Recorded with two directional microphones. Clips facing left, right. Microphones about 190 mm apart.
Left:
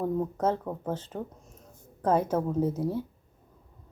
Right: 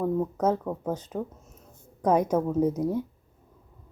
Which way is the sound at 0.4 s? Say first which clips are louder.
Right 3 dB; 5° right (ahead or behind).